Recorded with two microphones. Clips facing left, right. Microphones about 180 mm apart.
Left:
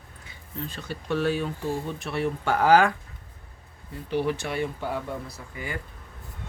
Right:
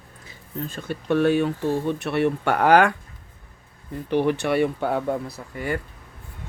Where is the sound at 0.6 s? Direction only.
50° right (ahead or behind); by 2.9 s 65° right (ahead or behind).